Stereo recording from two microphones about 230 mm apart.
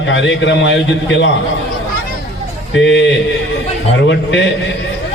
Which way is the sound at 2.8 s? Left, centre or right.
Left.